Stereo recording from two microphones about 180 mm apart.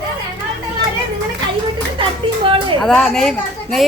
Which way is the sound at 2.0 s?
30° right (ahead or behind).